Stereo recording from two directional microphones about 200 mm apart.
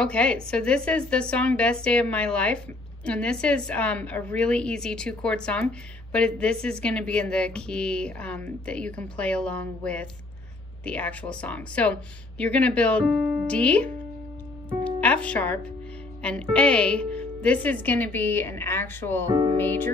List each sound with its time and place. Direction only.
0.0 s a woman's voice: 5° left (ahead or behind)
19.2 s music: 20° right (ahead or behind)